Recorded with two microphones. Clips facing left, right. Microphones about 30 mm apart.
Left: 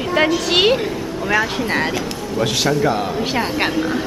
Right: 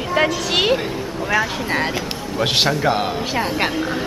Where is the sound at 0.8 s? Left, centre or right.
Centre.